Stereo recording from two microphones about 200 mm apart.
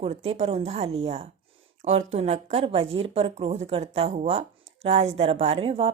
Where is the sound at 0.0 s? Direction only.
30° right (ahead or behind).